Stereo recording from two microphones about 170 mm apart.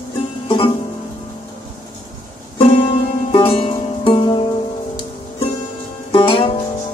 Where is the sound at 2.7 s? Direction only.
30° left (ahead or behind).